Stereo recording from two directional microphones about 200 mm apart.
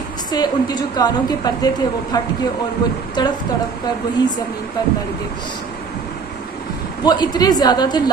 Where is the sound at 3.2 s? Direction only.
20° left (ahead or behind).